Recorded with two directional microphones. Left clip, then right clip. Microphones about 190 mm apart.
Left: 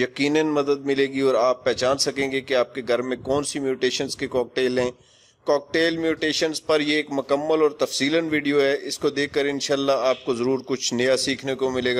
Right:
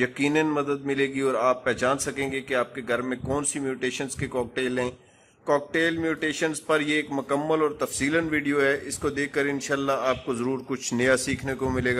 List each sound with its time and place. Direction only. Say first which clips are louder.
0.0 s a man's voice: left 2 dB; 40° left (ahead or behind)
1.6 s a man's voice: left 3 dB; 40° left (ahead or behind)
3.0 s a man's voice: left 4 dB; 25° left (ahead or behind)
3.5 s a man's voice: left 5 dB; 40° left (ahead or behind)
7.1 s a man's voice: left 3 dB; 25° left (ahead or behind); by 9.6 s 45° left (ahead or behind)
9.7 s a man's voice: left 7 dB; 30° left (ahead or behind)